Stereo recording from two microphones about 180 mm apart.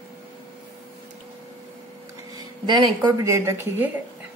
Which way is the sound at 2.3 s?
25° right (ahead or behind).